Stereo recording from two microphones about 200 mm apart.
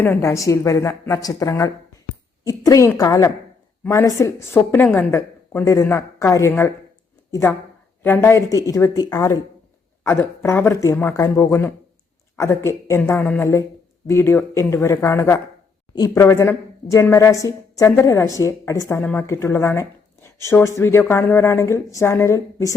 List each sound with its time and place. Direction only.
0.0 s a woman's voice: 10° left (ahead or behind)